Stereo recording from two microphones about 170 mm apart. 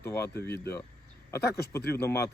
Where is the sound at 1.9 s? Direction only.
15° left (ahead or behind).